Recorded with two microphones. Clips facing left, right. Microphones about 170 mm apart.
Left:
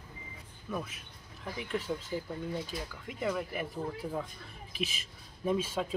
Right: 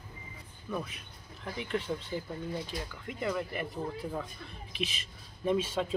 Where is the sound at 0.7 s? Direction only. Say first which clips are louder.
Right 1 dB; 5° left (ahead or behind).